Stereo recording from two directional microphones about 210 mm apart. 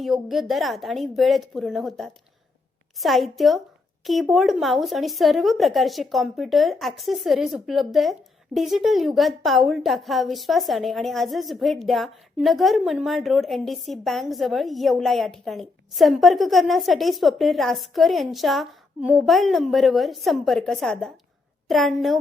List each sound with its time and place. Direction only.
0.0 s a woman's voice: centre (ahead or behind)